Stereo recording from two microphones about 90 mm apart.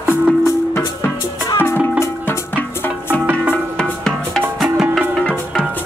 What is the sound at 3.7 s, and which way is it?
Music, 10° left (ahead or behind).